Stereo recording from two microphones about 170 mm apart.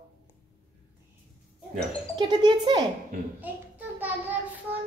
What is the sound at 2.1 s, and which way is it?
Speech, 25° right (ahead or behind).